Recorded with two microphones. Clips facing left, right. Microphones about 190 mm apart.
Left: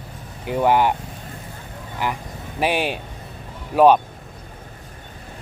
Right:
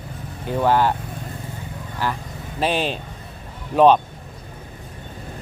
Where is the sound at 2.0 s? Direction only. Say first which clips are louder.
Even; 15° left (ahead or behind).